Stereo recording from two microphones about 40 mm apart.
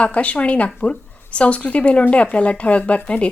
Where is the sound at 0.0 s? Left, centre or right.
Left.